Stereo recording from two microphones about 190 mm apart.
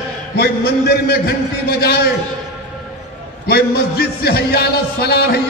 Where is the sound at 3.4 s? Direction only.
55° left (ahead or behind).